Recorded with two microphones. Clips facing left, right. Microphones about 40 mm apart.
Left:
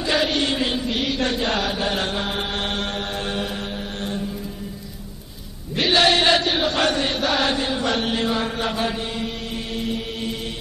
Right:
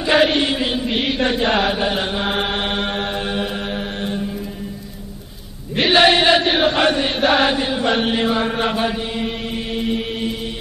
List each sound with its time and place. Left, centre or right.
0.0 s chant: right
0.5 s chant: centre
0.8 s mantra: right
2.2 s mantra: right
5.8 s chant: right
8.8 s chant: centre
9.8 s mantra: right